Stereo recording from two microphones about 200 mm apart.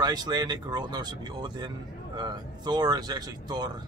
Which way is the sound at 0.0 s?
20° right (ahead or behind).